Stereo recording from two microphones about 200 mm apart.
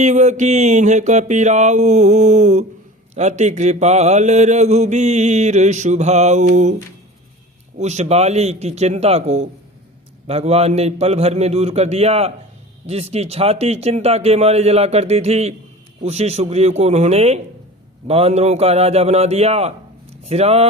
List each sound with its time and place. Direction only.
0.0 s mantra: 35° right (ahead or behind)
7.8 s mantra: 35° right (ahead or behind)